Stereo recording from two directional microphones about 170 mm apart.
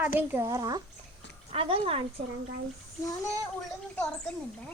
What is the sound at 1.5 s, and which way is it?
Speech, 35° right (ahead or behind).